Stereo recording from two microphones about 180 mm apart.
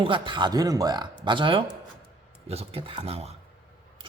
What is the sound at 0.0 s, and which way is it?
A man's voice, 25° right (ahead or behind).